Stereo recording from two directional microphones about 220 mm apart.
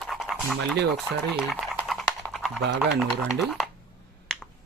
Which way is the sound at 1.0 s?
Centre (ahead or behind).